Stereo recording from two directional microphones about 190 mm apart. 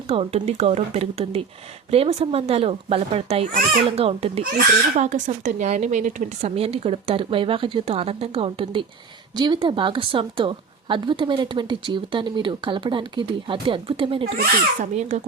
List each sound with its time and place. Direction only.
0.1 s speech: 30° right (ahead or behind)
14.3 s speech: 40° right (ahead or behind)